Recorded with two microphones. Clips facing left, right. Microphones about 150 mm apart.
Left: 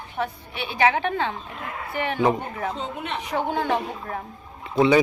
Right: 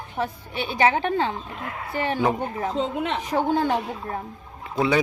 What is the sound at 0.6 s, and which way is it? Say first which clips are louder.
Speech: right 1 dB; 35° right (ahead or behind).